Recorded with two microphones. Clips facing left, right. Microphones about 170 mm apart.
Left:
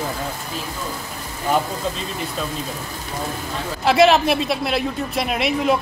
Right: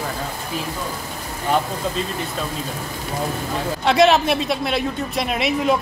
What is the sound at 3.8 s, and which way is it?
Speech, centre (ahead or behind).